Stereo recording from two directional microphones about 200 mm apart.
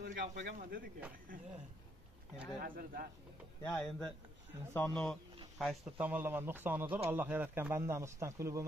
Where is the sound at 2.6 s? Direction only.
45° right (ahead or behind).